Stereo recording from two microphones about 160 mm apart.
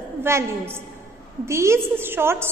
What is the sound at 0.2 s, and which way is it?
A woman's voice, 15° right (ahead or behind).